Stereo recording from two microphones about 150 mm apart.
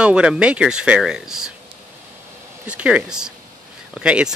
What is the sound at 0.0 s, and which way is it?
Speech, 5° right (ahead or behind).